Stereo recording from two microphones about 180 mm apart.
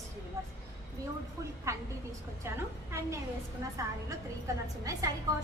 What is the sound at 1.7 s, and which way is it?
Speech, 15° right (ahead or behind).